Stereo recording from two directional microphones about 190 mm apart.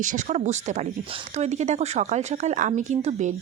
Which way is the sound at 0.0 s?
40° right (ahead or behind).